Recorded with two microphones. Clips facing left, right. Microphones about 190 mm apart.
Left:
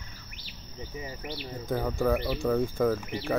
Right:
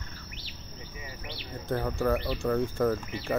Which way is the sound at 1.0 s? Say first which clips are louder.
Left 6 dB; 45° left (ahead or behind).